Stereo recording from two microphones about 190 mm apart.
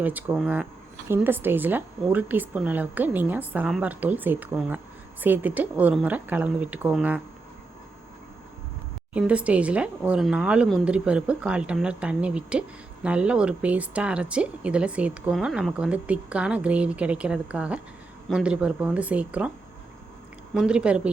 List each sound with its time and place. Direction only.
0.0 s speech: 10° right (ahead or behind)
9.1 s speech: 5° right (ahead or behind)
20.5 s a woman's voice: 5° right (ahead or behind)